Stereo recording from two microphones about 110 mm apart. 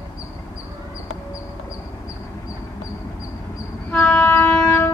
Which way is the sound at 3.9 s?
15° left (ahead or behind).